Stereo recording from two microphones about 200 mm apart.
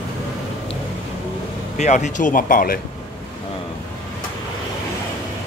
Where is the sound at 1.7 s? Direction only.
35° left (ahead or behind).